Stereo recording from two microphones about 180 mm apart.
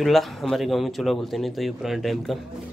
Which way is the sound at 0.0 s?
Centre (ahead or behind).